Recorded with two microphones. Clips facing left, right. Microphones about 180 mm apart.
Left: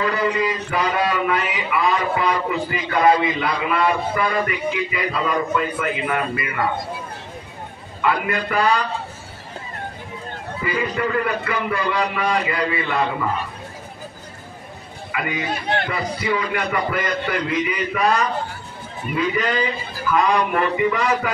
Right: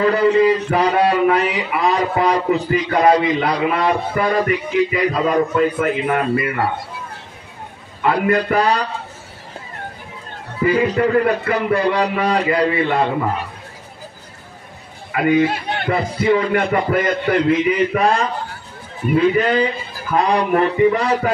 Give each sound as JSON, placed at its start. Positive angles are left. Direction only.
{"t": 0.0, "sound": "a man's voice", "side_deg": -35}
{"t": 8.0, "sound": "a man's voice", "side_deg": -40}
{"t": 10.6, "sound": "a man's voice", "side_deg": -40}
{"t": 15.1, "sound": "a man's voice", "side_deg": -50}
{"t": 19.1, "sound": "a man's voice", "side_deg": -30}